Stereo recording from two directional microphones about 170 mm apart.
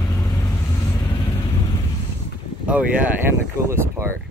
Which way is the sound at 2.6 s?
10° right (ahead or behind).